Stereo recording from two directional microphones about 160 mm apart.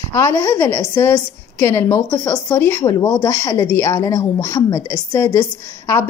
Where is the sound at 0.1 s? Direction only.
15° left (ahead or behind).